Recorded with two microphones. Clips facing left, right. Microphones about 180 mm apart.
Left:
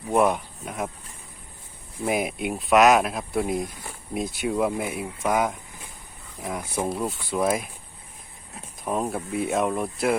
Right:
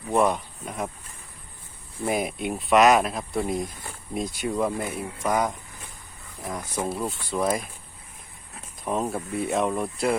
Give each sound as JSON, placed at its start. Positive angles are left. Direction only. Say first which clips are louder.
{"t": 0.1, "sound": "speech", "louder": "left 1 dB", "side_deg": 10}
{"t": 2.0, "sound": "speech", "louder": "left 1 dB", "side_deg": 5}
{"t": 8.8, "sound": "speech", "louder": "even", "side_deg": 0}